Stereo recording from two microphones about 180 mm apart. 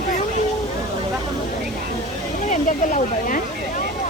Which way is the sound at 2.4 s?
45° left (ahead or behind).